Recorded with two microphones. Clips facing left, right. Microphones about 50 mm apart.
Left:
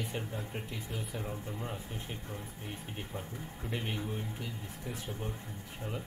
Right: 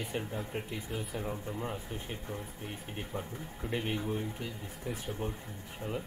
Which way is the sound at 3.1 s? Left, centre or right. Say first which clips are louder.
Right 4 dB; right.